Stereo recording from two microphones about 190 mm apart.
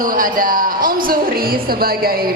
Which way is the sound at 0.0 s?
45° right (ahead or behind).